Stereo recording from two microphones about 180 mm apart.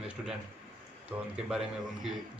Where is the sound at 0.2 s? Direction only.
5° right (ahead or behind).